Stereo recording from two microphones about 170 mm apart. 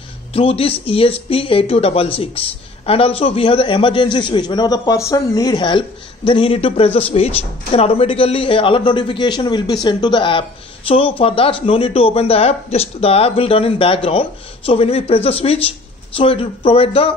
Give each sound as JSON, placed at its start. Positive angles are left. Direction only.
{"t": 0.3, "sound": "a man's voice", "side_deg": 35}